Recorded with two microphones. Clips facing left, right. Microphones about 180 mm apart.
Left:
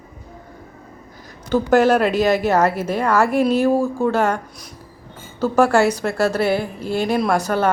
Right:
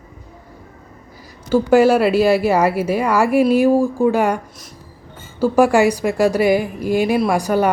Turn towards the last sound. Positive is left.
turn(degrees=-15)  # may be behind; listen again after turning